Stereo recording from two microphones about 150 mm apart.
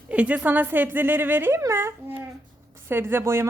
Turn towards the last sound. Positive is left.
turn(degrees=-20)  # may be behind; listen again after turning